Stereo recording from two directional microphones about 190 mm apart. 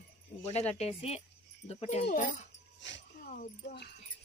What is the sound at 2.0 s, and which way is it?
Speech, 45° left (ahead or behind).